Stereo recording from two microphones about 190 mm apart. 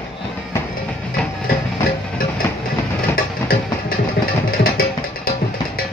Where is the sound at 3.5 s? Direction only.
50° left (ahead or behind).